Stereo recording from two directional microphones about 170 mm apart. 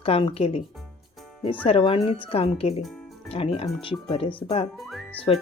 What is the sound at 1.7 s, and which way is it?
Speech, 35° left (ahead or behind).